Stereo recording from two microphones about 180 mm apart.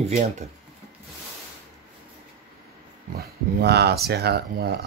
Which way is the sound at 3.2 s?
65° right (ahead or behind).